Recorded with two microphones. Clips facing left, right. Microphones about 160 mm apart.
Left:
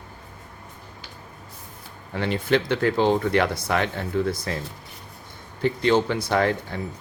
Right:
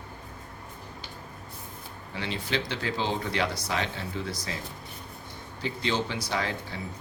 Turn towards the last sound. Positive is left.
turn(degrees=55)  # may be behind; listen again after turning